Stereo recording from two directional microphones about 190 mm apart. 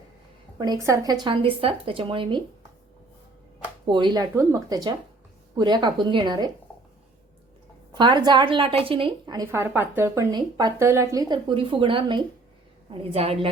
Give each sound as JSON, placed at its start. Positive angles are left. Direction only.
{"t": 0.6, "sound": "speech", "side_deg": -20}
{"t": 3.8, "sound": "speech", "side_deg": -25}
{"t": 7.9, "sound": "a woman's voice", "side_deg": -25}